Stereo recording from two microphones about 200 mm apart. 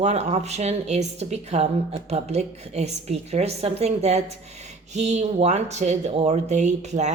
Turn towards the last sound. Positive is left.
turn(degrees=-35)  # may be behind; listen again after turning